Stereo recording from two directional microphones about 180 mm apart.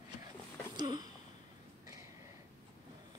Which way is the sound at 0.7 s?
20° right (ahead or behind).